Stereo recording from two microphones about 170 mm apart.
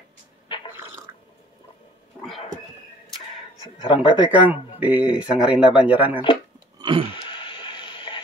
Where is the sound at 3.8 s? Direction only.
30° left (ahead or behind).